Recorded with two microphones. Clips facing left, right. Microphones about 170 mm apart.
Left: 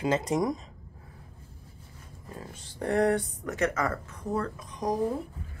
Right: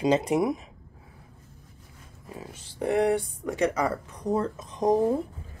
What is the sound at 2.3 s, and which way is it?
Speech, 10° right (ahead or behind).